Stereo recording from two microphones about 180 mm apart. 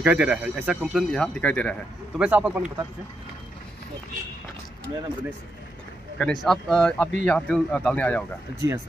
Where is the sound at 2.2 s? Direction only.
5° right (ahead or behind).